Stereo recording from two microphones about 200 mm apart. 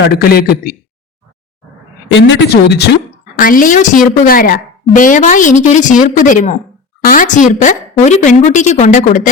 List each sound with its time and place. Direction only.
0.1 s a man's voice: 50° left (ahead or behind)
2.1 s speech: 65° left (ahead or behind)
3.3 s a woman's voice: 45° left (ahead or behind)